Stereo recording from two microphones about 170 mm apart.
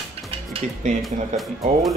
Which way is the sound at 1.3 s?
45° right (ahead or behind).